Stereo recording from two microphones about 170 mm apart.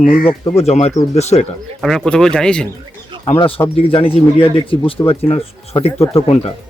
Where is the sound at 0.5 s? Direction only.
40° left (ahead or behind).